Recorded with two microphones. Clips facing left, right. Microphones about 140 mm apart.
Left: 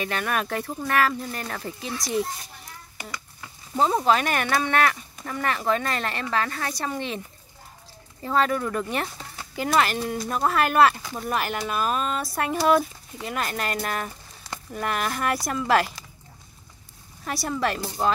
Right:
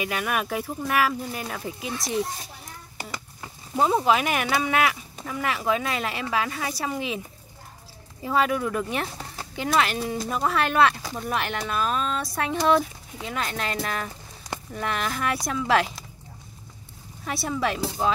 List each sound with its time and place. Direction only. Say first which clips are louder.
0.0 s speech: even; 5° right (ahead or behind)
3.0 s a sound: right 2 dB; 30° right (ahead or behind)
3.7 s speech: even; 5° right (ahead or behind)
8.2 s speech: even; 5° right (ahead or behind)
17.2 s speech: even; centre (ahead or behind)